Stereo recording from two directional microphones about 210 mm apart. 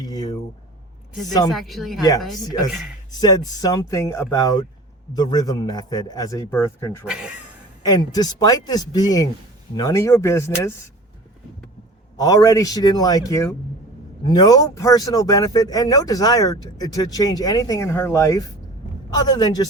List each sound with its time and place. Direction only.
0.0 s a sound: 20° left (ahead or behind)
1.5 s speech: centre (ahead or behind)
3.2 s a man's voice: 20° left (ahead or behind)
7.0 s speech: 5° right (ahead or behind)
7.9 s a man's voice: 20° left (ahead or behind)
12.1 s a man's voice: 15° left (ahead or behind)